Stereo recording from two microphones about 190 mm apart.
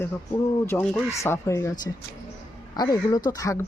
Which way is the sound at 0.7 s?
10° left (ahead or behind).